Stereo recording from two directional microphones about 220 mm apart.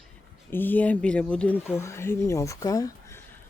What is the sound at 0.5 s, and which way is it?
Speech, 10° left (ahead or behind).